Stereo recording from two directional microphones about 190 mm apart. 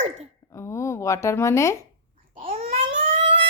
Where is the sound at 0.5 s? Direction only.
15° left (ahead or behind).